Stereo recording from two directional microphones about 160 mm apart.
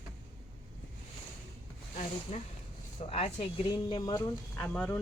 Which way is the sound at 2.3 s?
45° left (ahead or behind).